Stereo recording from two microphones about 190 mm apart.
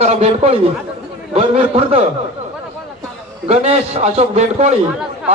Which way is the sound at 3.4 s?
35° right (ahead or behind).